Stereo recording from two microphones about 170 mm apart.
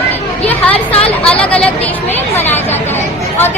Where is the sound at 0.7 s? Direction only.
35° left (ahead or behind).